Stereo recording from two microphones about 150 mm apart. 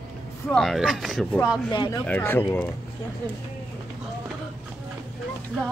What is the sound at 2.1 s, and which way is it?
Speech, 15° left (ahead or behind).